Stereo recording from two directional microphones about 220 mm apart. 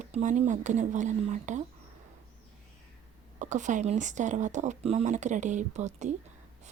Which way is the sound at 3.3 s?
35° right (ahead or behind).